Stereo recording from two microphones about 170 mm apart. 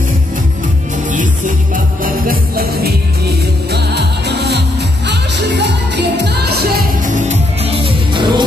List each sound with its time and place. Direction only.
2.0 s music: 60° right (ahead or behind)
3.7 s music: 75° right (ahead or behind)
7.2 s music: 35° right (ahead or behind)